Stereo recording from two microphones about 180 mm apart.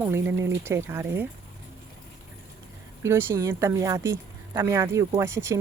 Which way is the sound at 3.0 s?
15° right (ahead or behind).